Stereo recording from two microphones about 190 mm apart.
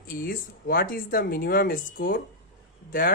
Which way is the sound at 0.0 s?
50° left (ahead or behind).